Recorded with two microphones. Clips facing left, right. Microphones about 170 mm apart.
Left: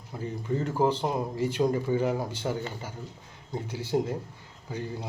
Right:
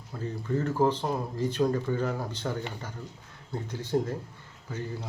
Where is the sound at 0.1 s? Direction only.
15° left (ahead or behind).